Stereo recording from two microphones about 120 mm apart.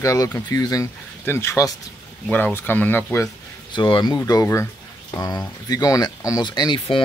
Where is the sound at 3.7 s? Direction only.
40° left (ahead or behind).